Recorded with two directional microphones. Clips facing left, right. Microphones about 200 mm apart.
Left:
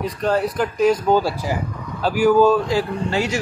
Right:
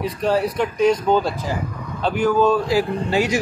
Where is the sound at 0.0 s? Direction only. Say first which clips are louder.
Even; centre (ahead or behind).